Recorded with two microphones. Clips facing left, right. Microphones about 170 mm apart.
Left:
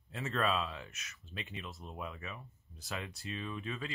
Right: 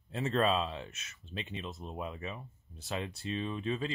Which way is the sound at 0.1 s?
25° right (ahead or behind).